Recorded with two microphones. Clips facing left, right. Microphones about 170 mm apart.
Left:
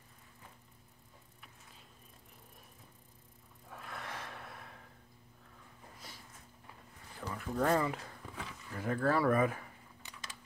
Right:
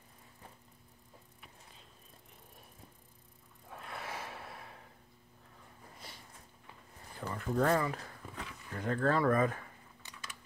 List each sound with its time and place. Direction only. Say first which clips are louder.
3.7 s gasp: right 2 dB; centre (ahead or behind)
5.9 s a sound: right 2 dB; centre (ahead or behind)
7.7 s speech: even; 20° left (ahead or behind)
8.4 s speech: right 1 dB; 5° left (ahead or behind)